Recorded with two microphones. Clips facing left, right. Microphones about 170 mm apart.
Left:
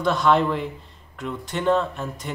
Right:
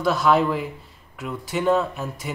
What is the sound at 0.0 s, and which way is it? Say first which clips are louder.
Speech: even; 5° right (ahead or behind).